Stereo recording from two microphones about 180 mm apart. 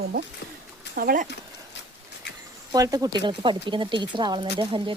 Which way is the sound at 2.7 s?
20° right (ahead or behind).